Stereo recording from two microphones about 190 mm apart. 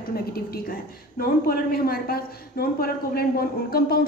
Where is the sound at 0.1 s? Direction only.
50° left (ahead or behind).